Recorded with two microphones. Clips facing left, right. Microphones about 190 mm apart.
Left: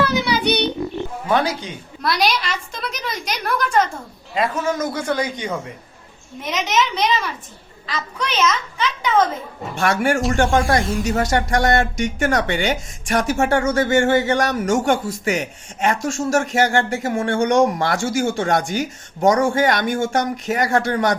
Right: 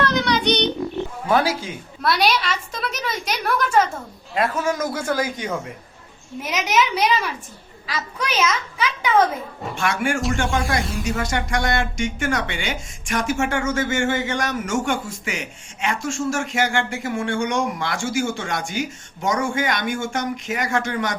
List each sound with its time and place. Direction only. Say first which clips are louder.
0.0 s child singing: left 1 dB; 5° left (ahead or behind)
1.3 s a woman's voice: even; 5° right (ahead or behind)
9.7 s speech: left 4 dB; 40° left (ahead or behind)